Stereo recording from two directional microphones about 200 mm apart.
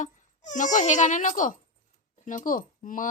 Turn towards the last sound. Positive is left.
turn(degrees=40)  # may be behind; listen again after turning